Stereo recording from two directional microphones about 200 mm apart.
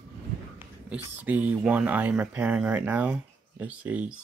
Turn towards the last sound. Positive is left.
turn(degrees=-5)  # may be behind; listen again after turning